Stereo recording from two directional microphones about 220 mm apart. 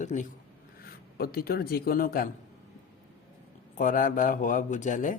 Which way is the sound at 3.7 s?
35° left (ahead or behind).